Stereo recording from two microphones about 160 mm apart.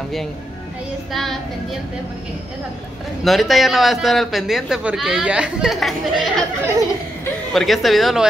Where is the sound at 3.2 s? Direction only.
Centre (ahead or behind).